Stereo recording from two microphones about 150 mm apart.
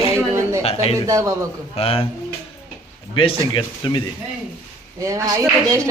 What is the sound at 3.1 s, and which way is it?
Speech, 35° left (ahead or behind).